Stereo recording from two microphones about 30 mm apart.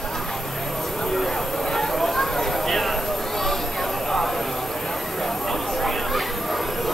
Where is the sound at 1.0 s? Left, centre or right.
Centre.